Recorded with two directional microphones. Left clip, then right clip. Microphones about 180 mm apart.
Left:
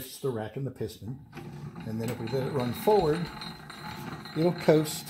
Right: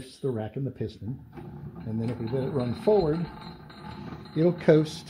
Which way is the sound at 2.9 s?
20° right (ahead or behind).